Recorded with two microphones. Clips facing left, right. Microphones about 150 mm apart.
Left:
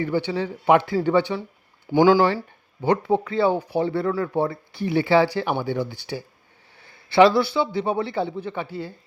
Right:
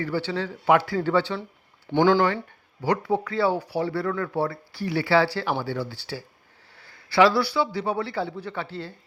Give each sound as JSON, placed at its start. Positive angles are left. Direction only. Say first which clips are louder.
{"t": 0.0, "sound": "speech", "louder": "left 3 dB", "side_deg": 15}
{"t": 2.8, "sound": "a man's voice", "louder": "left 3 dB", "side_deg": 25}